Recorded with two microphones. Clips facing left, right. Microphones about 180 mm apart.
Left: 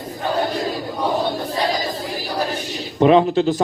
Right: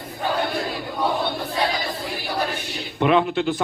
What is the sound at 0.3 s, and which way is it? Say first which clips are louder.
Battle cry: left 6 dB; 40° left (ahead or behind).